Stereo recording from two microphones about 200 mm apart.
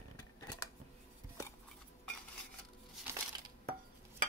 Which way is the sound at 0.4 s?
15° left (ahead or behind).